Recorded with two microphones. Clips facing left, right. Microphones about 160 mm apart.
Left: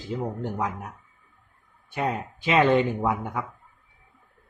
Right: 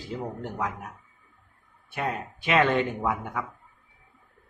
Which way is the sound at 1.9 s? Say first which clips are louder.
Left 3 dB; 20° left (ahead or behind).